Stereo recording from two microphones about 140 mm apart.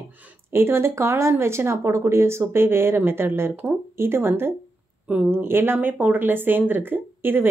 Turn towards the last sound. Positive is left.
turn(degrees=-15)  # may be behind; listen again after turning